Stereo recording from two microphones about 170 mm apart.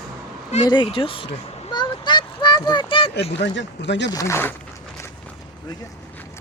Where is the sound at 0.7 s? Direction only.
30° left (ahead or behind).